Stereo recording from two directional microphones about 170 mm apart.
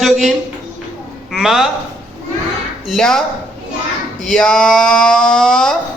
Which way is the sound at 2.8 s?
Centre (ahead or behind).